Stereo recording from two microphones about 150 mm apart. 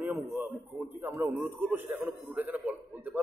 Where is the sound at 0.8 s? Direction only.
15° right (ahead or behind).